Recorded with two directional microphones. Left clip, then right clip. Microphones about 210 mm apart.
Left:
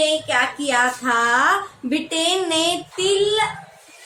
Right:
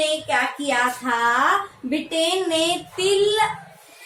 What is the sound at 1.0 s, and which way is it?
Child singing, 20° left (ahead or behind).